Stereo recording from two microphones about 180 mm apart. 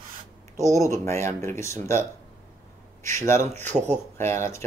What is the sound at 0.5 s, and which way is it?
Speech, 15° left (ahead or behind).